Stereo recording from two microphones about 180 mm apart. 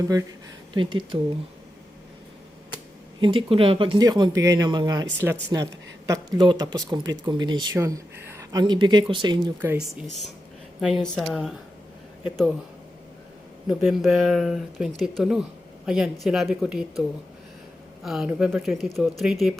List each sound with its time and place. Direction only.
0.1 s speech: 20° right (ahead or behind)
3.2 s speech: 30° right (ahead or behind)
9.6 s speech: 10° right (ahead or behind)
13.7 s speech: centre (ahead or behind)
18.0 s speech: centre (ahead or behind)